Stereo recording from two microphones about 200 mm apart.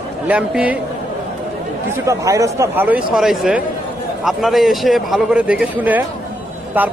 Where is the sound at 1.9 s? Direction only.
15° right (ahead or behind).